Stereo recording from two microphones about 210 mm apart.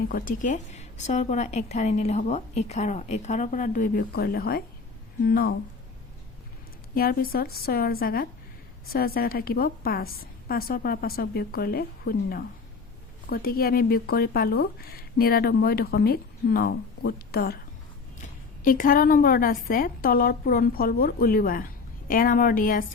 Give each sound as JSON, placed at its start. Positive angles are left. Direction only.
{"t": 0.1, "sound": "a woman's voice", "side_deg": 40}
{"t": 6.9, "sound": "a woman's voice", "side_deg": 45}